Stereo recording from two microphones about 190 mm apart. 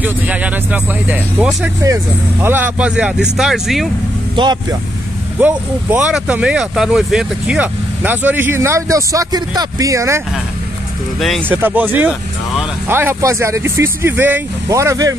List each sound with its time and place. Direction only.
0.0 s speech: 10° right (ahead or behind)
4.4 s speech: 25° right (ahead or behind)
5.4 s speech: 10° right (ahead or behind)
11.1 s speech: centre (ahead or behind)
11.4 s speech: 10° right (ahead or behind)